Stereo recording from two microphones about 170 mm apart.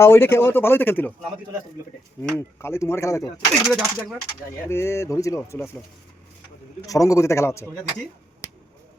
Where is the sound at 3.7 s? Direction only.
Centre (ahead or behind).